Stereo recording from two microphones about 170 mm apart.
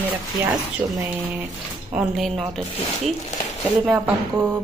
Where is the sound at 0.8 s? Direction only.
20° right (ahead or behind).